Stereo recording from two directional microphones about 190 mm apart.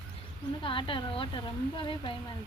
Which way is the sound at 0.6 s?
25° left (ahead or behind).